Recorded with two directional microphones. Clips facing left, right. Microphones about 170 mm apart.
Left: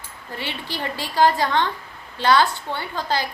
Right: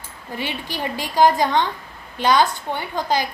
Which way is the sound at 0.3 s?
15° right (ahead or behind).